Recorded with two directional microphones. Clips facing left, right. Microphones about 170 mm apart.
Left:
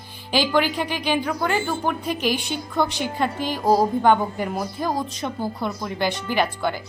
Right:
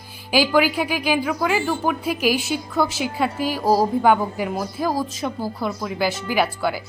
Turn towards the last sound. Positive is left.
turn(degrees=-5)  # may be behind; listen again after turning